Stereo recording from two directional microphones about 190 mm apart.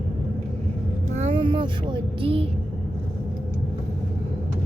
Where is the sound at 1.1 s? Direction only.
30° right (ahead or behind).